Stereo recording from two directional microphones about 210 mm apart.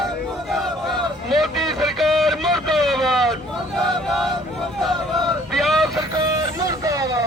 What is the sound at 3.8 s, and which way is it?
Chant, centre (ahead or behind).